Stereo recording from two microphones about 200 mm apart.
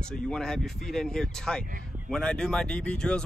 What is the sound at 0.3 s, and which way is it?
Speech, centre (ahead or behind).